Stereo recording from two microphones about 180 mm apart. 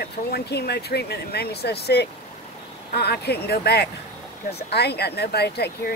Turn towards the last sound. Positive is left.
turn(degrees=65)  # may be behind; listen again after turning